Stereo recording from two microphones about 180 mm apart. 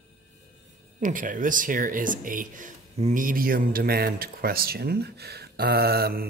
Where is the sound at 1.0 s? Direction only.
50° right (ahead or behind).